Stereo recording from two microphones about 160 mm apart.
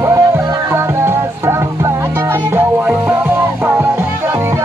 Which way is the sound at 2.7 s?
10° right (ahead or behind).